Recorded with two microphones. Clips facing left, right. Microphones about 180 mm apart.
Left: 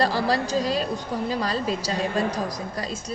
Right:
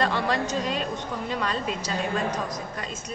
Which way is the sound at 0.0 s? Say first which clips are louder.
Left 2 dB; 35° left (ahead or behind).